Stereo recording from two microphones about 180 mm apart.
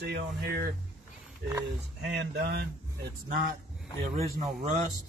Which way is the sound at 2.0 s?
70° right (ahead or behind).